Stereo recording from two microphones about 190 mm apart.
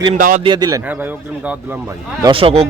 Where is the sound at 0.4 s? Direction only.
20° right (ahead or behind).